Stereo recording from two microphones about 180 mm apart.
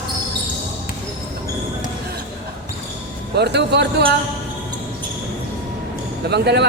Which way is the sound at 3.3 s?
70° right (ahead or behind).